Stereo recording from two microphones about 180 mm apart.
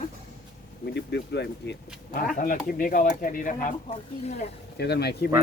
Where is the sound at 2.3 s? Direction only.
50° left (ahead or behind).